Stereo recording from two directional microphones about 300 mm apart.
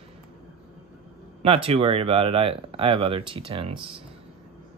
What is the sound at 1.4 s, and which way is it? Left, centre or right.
Speech, centre.